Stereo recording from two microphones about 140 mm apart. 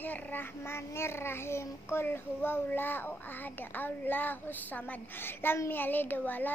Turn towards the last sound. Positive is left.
turn(degrees=15)  # may be behind; listen again after turning